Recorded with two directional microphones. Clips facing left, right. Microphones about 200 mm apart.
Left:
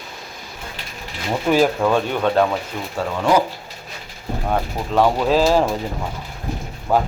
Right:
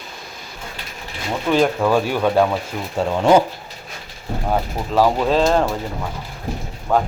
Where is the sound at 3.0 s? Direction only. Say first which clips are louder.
Right 4 dB; 25° right (ahead or behind).